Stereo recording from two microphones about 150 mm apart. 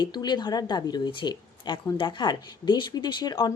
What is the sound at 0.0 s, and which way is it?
Speech, 30° left (ahead or behind).